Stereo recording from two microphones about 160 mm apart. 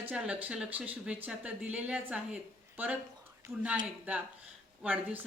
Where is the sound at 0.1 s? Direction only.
10° right (ahead or behind).